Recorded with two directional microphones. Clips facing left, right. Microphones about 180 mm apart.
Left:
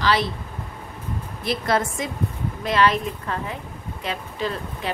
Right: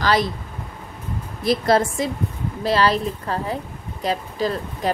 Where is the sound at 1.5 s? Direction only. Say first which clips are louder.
Right 5 dB; 35° right (ahead or behind).